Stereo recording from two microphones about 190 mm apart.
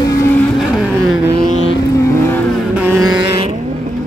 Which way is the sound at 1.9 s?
15° left (ahead or behind).